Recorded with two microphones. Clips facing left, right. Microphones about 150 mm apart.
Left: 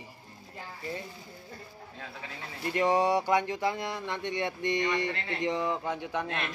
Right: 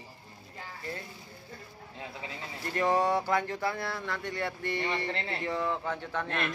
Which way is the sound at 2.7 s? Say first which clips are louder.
Left 1 dB; 10° left (ahead or behind).